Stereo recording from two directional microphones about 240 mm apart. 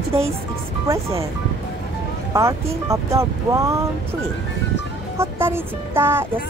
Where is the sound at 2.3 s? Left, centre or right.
Centre.